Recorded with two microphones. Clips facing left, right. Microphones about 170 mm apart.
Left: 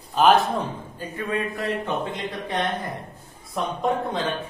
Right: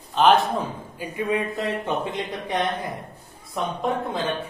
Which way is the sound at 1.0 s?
15° right (ahead or behind).